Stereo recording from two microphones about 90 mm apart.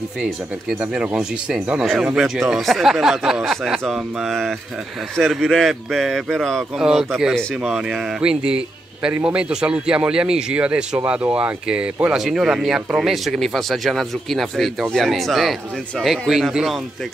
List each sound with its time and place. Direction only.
0.7 s a man's voice: 15° right (ahead or behind)